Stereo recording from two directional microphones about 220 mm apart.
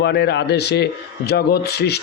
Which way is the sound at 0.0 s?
50° left (ahead or behind).